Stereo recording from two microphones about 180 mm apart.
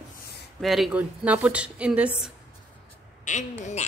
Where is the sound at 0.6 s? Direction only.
Centre (ahead or behind).